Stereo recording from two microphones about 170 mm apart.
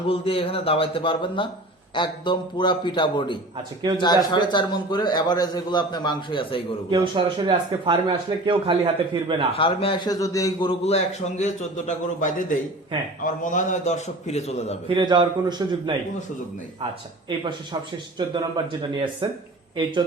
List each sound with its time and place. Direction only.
0.1 s a man's voice: 35° left (ahead or behind)
6.9 s speech: 25° right (ahead or behind)
9.6 s speech: 30° left (ahead or behind)
10.2 s a man's voice: 20° left (ahead or behind)
10.7 s a man's voice: 40° left (ahead or behind)
14.8 s speech: 25° right (ahead or behind)
17.2 s speech: 25° right (ahead or behind)